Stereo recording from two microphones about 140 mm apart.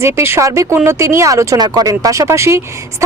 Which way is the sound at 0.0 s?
20° right (ahead or behind).